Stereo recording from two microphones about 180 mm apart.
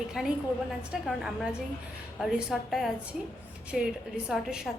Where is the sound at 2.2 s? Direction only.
Centre (ahead or behind).